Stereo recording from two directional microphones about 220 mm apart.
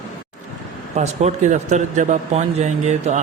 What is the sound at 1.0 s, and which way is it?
A man's voice, 30° right (ahead or behind).